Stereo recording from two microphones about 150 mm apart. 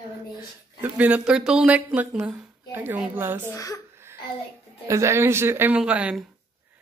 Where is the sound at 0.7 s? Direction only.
10° right (ahead or behind).